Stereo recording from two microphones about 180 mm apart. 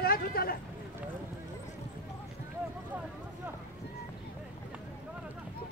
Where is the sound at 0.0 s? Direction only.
55° left (ahead or behind).